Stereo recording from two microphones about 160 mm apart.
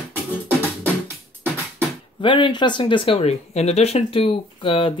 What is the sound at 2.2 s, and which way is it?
Speech, 30° left (ahead or behind).